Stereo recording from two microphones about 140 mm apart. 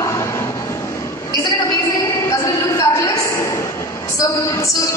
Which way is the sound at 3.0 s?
20° left (ahead or behind).